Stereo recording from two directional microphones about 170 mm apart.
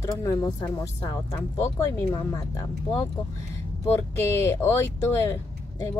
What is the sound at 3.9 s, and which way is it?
Speech, 15° left (ahead or behind).